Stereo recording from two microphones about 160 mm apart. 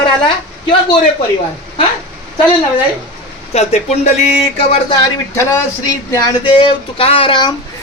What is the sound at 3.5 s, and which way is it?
Speech, 40° left (ahead or behind).